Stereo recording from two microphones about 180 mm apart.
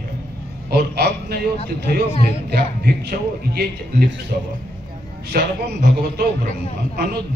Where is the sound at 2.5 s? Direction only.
60° right (ahead or behind).